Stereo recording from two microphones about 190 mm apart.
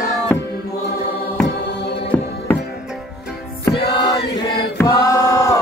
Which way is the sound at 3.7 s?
25° left (ahead or behind).